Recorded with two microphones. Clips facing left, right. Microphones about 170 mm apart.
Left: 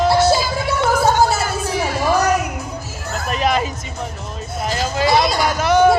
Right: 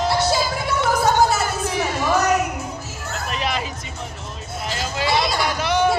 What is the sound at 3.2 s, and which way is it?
Hubbub, 45° left (ahead or behind).